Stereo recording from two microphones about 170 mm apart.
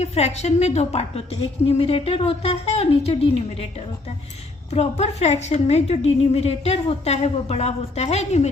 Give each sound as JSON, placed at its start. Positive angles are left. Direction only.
{"t": 0.0, "sound": "a woman's voice", "side_deg": 40}
{"t": 4.7, "sound": "a woman's voice", "side_deg": 40}